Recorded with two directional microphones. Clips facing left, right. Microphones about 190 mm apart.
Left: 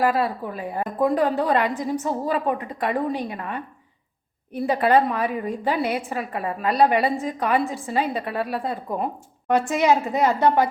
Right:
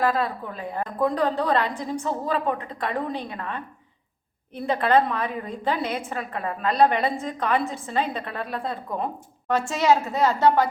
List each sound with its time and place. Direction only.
0.0 s a woman's voice: 10° left (ahead or behind)